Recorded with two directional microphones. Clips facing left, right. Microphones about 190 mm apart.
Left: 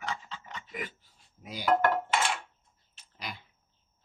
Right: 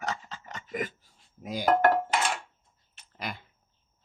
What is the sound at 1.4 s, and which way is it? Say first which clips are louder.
Speech: right 3 dB; 45° right (ahead or behind).